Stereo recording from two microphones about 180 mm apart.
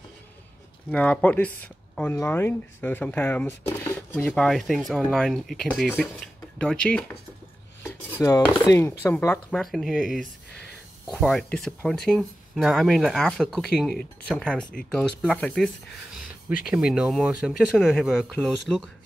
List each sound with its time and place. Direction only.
0.9 s speech: 5° left (ahead or behind)
8.2 s speech: 20° left (ahead or behind)